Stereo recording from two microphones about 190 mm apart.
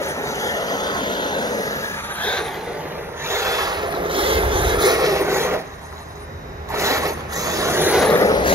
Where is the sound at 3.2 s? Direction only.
15° right (ahead or behind).